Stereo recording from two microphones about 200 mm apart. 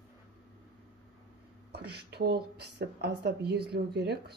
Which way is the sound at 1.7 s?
55° right (ahead or behind).